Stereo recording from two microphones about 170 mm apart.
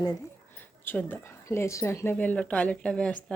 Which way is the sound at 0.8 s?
10° left (ahead or behind).